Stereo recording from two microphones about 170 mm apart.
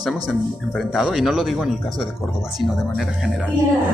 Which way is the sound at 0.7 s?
Centre (ahead or behind).